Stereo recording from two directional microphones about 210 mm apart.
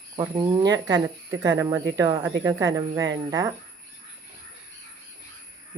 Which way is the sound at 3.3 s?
15° right (ahead or behind).